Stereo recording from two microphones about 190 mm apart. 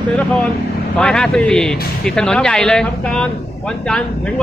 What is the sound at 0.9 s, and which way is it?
A man's voice, 5° left (ahead or behind).